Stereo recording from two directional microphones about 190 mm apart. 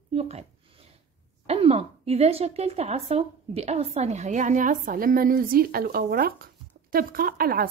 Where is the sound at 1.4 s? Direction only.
30° right (ahead or behind); by 7.6 s 50° right (ahead or behind).